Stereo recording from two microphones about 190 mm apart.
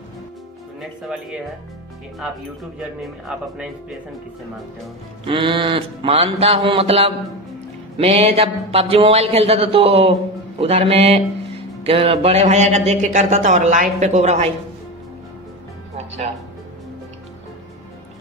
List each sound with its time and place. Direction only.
0.7 s speech: 5° right (ahead or behind)
5.2 s music: 25° right (ahead or behind)
8.0 s speech: 30° right (ahead or behind)